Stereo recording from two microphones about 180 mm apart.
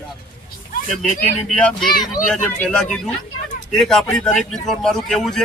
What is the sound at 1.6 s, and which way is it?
Speech, 5° left (ahead or behind).